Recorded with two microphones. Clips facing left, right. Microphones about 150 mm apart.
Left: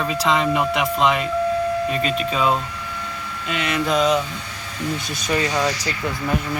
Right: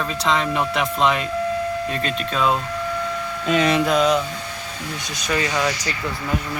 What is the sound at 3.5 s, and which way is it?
Speech, 35° right (ahead or behind).